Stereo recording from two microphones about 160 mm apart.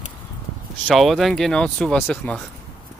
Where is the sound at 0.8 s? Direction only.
Centre (ahead or behind).